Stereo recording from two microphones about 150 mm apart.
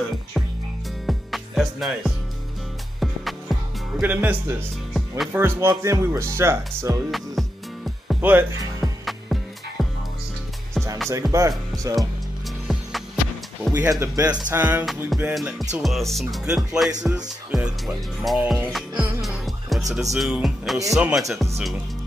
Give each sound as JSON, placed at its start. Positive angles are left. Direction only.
{"t": 1.0, "sound": "music", "side_deg": 0}
{"t": 4.0, "sound": "speech", "side_deg": -10}
{"t": 4.9, "sound": "music", "side_deg": 0}
{"t": 5.3, "sound": "speech", "side_deg": -15}
{"t": 7.1, "sound": "music", "side_deg": 0}
{"t": 8.2, "sound": "speech", "side_deg": -10}
{"t": 9.0, "sound": "music", "side_deg": 0}
{"t": 11.1, "sound": "speech", "side_deg": -20}
{"t": 12.6, "sound": "music", "side_deg": 0}
{"t": 13.7, "sound": "speech", "side_deg": -20}
{"t": 15.1, "sound": "speech", "side_deg": 0}
{"t": 18.7, "sound": "music", "side_deg": 0}
{"t": 19.9, "sound": "speech", "side_deg": 0}